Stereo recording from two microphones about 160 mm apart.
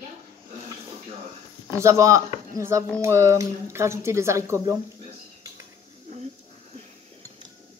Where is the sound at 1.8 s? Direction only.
20° right (ahead or behind).